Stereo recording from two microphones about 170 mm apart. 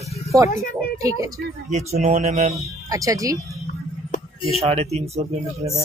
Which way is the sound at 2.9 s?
20° right (ahead or behind).